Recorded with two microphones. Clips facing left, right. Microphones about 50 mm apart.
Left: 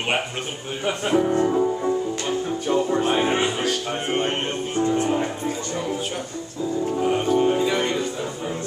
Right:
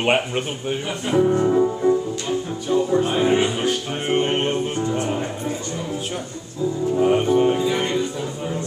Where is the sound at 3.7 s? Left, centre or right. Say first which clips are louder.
Right 2 dB; centre.